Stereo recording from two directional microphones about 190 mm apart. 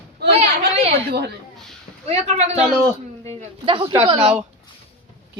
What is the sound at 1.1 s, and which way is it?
Speech, 60° right (ahead or behind).